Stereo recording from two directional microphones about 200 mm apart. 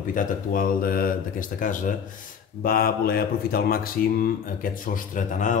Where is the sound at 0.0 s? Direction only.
40° left (ahead or behind).